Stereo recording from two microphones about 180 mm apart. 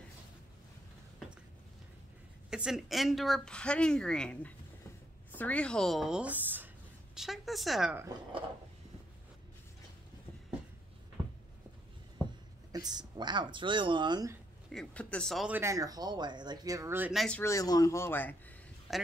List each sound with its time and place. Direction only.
2.5 s a woman's voice: 5° right (ahead or behind)
12.7 s speech: 20° right (ahead or behind)
14.7 s speech: 5° left (ahead or behind); by 17.1 s 15° right (ahead or behind)
17.1 s speech: centre (ahead or behind)
17.4 s speech: 15° left (ahead or behind)
18.9 s a man's voice: centre (ahead or behind)